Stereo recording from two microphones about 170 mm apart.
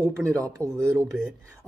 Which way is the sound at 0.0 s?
20° right (ahead or behind).